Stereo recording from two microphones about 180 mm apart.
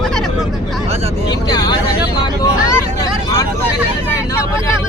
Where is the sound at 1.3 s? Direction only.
25° left (ahead or behind).